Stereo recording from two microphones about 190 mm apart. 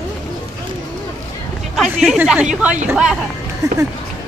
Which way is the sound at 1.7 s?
Centre (ahead or behind).